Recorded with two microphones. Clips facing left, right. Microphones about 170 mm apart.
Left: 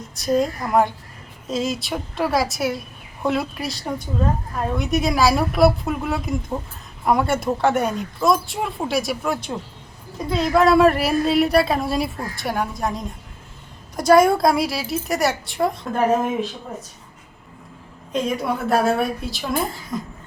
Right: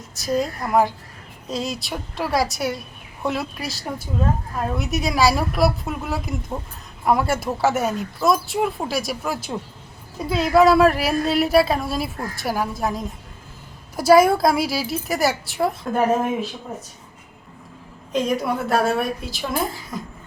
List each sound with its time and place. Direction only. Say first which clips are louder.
0.1 s speech: left 3 dB; centre (ahead or behind)
18.1 s speech: right 1 dB; centre (ahead or behind)